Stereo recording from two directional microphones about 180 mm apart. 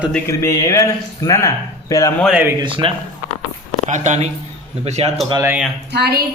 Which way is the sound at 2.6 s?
30° right (ahead or behind).